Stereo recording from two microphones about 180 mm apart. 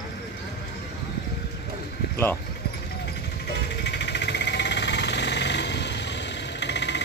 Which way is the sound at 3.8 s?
70° left (ahead or behind).